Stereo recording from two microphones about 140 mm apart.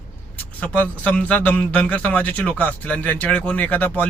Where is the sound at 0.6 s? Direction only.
10° left (ahead or behind).